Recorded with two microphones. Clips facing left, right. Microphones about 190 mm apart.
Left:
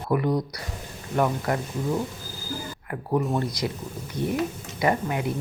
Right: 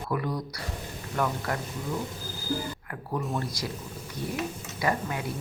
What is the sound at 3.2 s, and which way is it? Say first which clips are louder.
Speech: left 5 dB; 20° left (ahead or behind).